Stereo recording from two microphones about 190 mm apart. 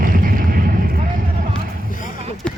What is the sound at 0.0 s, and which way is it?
Vehicle, 45° right (ahead or behind).